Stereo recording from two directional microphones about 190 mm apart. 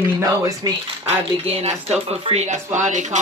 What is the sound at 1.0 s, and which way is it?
Speech, 30° right (ahead or behind).